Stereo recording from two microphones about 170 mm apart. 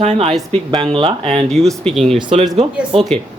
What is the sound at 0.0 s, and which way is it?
Speech, 40° right (ahead or behind).